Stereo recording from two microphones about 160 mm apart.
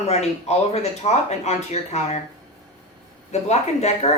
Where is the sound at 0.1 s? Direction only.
45° left (ahead or behind).